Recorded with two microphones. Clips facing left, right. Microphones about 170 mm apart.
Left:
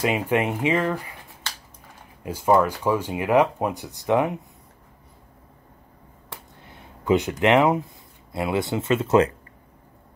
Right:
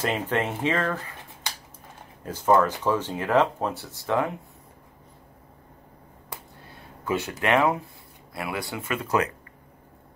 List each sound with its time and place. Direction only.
0.0 s speech: 10° left (ahead or behind)
2.2 s speech: 10° left (ahead or behind)
6.6 s speech: 20° left (ahead or behind)